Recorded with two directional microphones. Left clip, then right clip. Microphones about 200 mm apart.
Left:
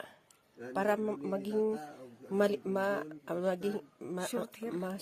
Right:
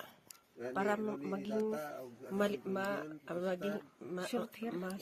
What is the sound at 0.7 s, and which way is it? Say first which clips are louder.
Speech: left 4 dB; 35° left (ahead or behind).